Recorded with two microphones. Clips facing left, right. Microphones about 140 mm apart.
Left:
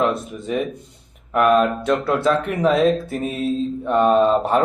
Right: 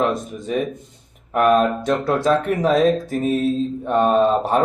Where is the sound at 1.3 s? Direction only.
40° right (ahead or behind).